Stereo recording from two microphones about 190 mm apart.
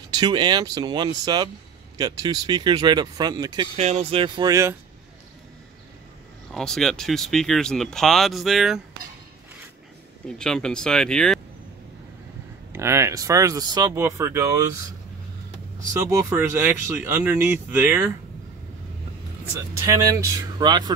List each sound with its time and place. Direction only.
0.1 s speech: 20° right (ahead or behind)
3.7 s speech: 35° right (ahead or behind); by 4.7 s 15° right (ahead or behind)
6.5 s speech: centre (ahead or behind)
10.2 s speech: 5° left (ahead or behind)
12.7 s speech: 15° right (ahead or behind)
15.9 s speech: 15° right (ahead or behind)
19.8 s speech: 15° right (ahead or behind)